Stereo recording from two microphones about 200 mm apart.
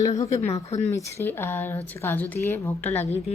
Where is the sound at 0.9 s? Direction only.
10° left (ahead or behind).